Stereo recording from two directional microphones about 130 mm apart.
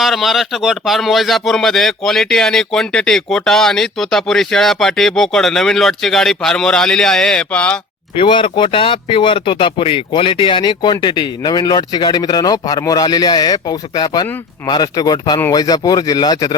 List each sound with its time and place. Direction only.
0.0 s speech: centre (ahead or behind)
8.1 s speech: 40° left (ahead or behind)